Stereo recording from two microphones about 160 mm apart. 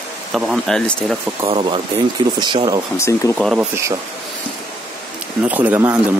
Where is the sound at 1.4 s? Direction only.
35° right (ahead or behind).